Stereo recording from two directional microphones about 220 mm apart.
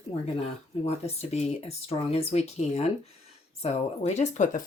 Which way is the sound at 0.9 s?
30° left (ahead or behind).